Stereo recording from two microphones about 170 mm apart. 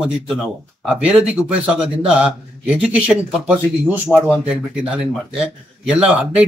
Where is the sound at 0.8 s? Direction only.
5° right (ahead or behind).